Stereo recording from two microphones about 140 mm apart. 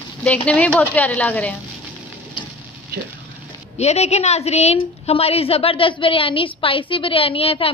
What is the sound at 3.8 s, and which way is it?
A woman's voice, 50° left (ahead or behind).